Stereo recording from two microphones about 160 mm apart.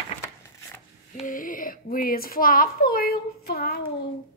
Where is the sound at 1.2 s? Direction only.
55° left (ahead or behind); by 3.7 s 75° left (ahead or behind).